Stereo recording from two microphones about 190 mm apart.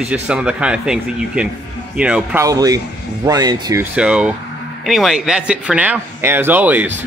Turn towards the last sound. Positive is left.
turn(degrees=-10)  # may be behind; listen again after turning